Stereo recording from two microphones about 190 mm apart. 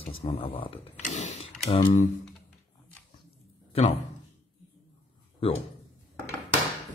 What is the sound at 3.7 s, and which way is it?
Speech, 35° left (ahead or behind).